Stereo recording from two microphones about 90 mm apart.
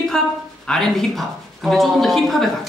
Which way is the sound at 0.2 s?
5° left (ahead or behind).